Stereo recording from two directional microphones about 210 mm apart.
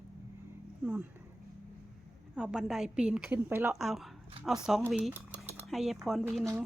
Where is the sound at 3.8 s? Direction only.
Centre (ahead or behind).